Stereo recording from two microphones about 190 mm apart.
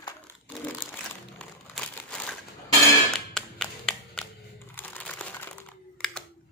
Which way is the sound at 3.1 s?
Centre (ahead or behind).